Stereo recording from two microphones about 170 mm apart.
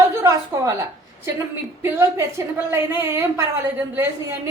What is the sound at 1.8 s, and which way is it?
A woman's voice, 15° right (ahead or behind).